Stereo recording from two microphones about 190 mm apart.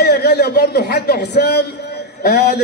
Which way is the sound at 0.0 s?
60° left (ahead or behind).